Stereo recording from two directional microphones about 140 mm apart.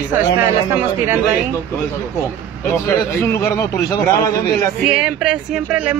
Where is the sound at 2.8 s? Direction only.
20° left (ahead or behind).